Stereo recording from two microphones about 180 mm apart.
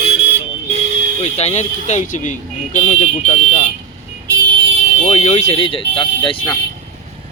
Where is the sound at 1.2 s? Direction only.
35° left (ahead or behind).